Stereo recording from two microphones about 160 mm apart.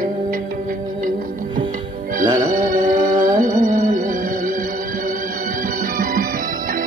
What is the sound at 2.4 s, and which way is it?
Music, 55° right (ahead or behind).